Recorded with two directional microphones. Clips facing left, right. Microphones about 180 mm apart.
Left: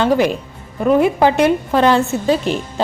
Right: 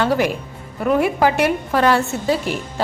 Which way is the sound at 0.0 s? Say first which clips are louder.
Left 3 dB; 20° left (ahead or behind).